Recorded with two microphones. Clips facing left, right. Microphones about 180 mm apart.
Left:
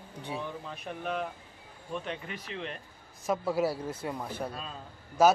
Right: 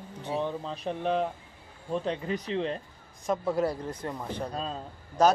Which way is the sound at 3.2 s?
5° left (ahead or behind).